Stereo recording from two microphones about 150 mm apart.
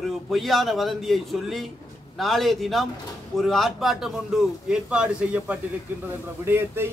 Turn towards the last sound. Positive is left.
turn(degrees=-15)  # may be behind; listen again after turning